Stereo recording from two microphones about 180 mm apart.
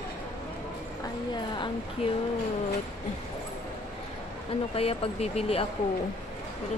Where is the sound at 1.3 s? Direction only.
25° left (ahead or behind).